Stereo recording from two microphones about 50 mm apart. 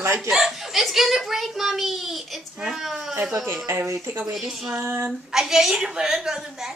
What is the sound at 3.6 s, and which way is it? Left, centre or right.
Speech, right.